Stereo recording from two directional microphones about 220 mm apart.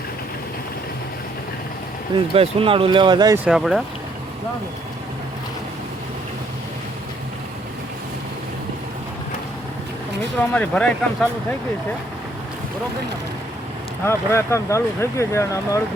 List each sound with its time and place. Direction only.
2.3 s speech: 25° right (ahead or behind)
3.4 s speech: centre (ahead or behind)
10.4 s speech: 5° left (ahead or behind)
14.0 s speech: 10° left (ahead or behind)